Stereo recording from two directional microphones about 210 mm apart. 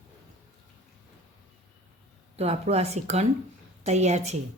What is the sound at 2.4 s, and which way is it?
A woman's voice, 30° right (ahead or behind).